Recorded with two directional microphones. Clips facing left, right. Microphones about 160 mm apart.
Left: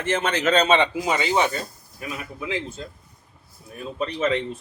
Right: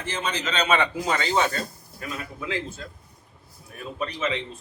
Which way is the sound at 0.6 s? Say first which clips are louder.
Left 3 dB; 20° left (ahead or behind).